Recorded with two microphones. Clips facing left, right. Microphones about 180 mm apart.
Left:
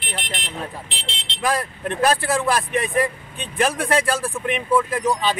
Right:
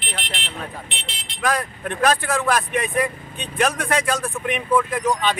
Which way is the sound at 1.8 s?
30° left (ahead or behind).